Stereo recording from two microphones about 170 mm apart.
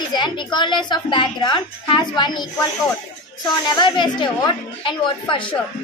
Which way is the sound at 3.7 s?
25° left (ahead or behind).